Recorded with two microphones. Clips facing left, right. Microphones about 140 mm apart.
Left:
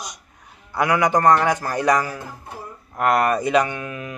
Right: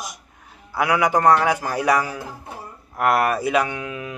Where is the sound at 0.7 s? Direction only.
10° right (ahead or behind).